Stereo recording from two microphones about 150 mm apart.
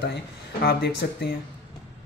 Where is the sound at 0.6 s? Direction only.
90° left.